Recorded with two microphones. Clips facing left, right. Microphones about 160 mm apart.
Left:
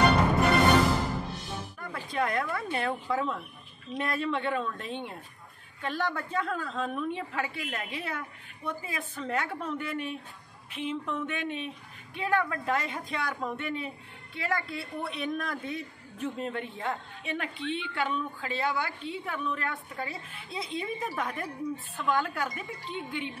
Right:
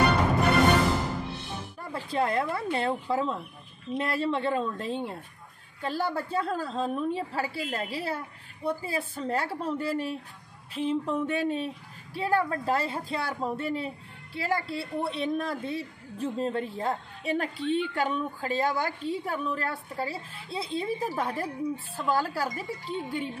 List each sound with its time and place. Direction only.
1.8 s a woman's voice: 30° right (ahead or behind)